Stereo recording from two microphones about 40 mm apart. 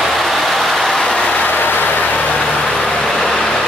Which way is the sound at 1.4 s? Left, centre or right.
Left.